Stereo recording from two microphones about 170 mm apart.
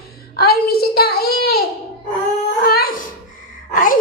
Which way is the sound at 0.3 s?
65° left (ahead or behind).